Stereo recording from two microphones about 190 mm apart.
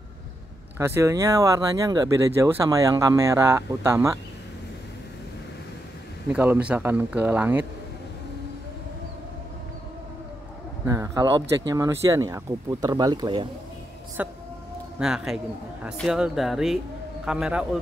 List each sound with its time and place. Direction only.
0.7 s speech: 15° right (ahead or behind)
6.3 s speech: 10° right (ahead or behind)
10.9 s speech: 20° right (ahead or behind)
14.2 s a man's voice: 10° right (ahead or behind)